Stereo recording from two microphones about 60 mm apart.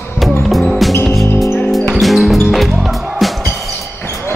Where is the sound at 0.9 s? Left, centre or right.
Left.